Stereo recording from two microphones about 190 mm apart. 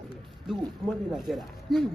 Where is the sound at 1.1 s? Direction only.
Centre (ahead or behind).